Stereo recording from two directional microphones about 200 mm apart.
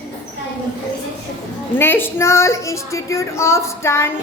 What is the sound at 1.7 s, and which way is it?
Speech, 10° left (ahead or behind).